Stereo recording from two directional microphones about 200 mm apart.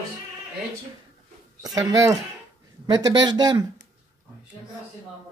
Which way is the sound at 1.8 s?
15° right (ahead or behind).